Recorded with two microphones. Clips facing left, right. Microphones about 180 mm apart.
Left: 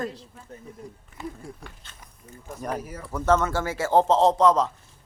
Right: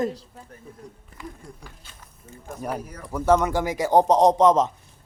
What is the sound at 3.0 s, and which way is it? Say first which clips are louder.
A man's voice: right 3 dB; 10° right (ahead or behind).